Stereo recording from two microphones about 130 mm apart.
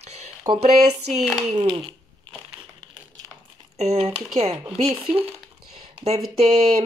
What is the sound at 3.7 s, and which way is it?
Speech, 60° right (ahead or behind).